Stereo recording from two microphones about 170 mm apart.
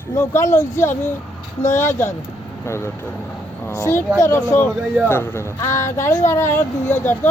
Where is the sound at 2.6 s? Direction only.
15° left (ahead or behind).